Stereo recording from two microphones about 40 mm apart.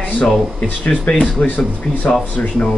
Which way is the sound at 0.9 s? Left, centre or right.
Left.